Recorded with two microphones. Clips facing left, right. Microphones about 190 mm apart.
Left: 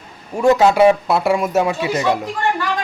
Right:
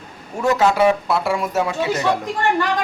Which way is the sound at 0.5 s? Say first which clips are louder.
Left 3 dB; 20° left (ahead or behind).